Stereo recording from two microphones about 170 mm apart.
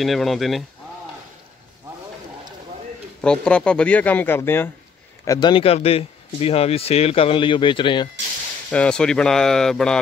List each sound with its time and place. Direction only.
0.0 s speech: centre (ahead or behind)
3.2 s speech: 5° left (ahead or behind); by 8.1 s 30° left (ahead or behind)
8.6 s speech: 5° left (ahead or behind)